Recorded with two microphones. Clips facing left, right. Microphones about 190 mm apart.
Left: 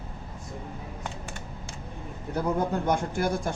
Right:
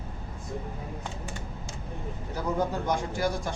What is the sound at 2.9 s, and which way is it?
Speech, 55° left (ahead or behind).